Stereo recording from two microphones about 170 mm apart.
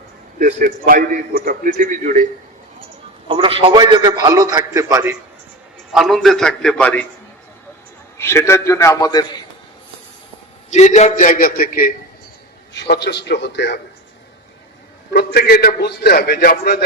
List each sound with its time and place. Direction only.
0.3 s a man's voice: 55° right (ahead or behind)
3.2 s a man's voice: 30° right (ahead or behind)
5.9 s a man's voice: centre (ahead or behind)
8.2 s a man's voice: 15° left (ahead or behind)
10.7 s a man's voice: 45° left (ahead or behind)
12.8 s a man's voice: 75° left (ahead or behind)
15.1 s a man's voice: 70° left (ahead or behind)